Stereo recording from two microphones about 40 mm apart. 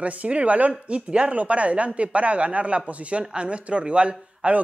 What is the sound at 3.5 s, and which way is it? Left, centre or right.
A man's voice, right.